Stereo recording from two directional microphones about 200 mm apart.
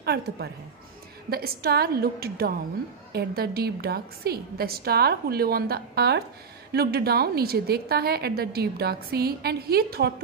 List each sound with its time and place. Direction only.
0.0 s a woman's voice: 55° right (ahead or behind)